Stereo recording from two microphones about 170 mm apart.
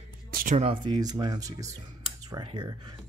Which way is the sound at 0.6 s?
30° right (ahead or behind).